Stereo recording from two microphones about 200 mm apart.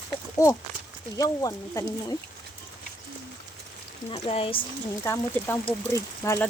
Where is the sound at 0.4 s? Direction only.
15° left (ahead or behind).